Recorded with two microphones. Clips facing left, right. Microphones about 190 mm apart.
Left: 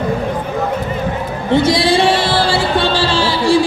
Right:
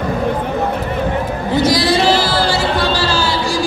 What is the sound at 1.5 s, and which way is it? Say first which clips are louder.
Music: left 2 dB; 25° left (ahead or behind).